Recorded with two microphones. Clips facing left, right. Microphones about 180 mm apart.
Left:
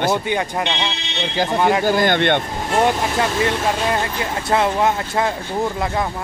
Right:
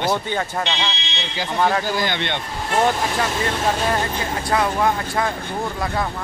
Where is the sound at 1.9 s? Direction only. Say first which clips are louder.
Left 7 dB; 50° left (ahead or behind).